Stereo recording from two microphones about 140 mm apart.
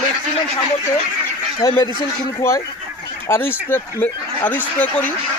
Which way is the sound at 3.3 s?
15° left (ahead or behind).